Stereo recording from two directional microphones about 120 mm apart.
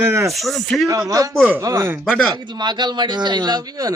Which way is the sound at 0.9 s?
25° right (ahead or behind).